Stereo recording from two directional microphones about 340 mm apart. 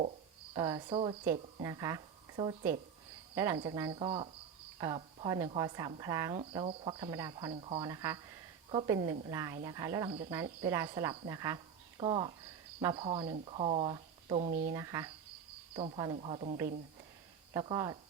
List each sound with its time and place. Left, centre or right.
0.5 s speech: centre
14.7 s speech: centre